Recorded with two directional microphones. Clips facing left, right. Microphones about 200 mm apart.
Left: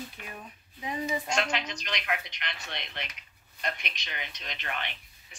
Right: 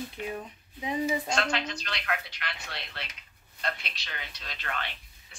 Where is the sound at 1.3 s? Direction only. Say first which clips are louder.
Right 1 dB; 15° left (ahead or behind).